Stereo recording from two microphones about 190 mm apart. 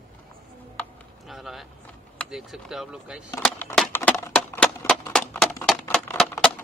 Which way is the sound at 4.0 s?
15° left (ahead or behind).